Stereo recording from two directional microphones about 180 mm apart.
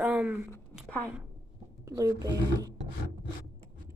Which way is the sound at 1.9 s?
20° right (ahead or behind).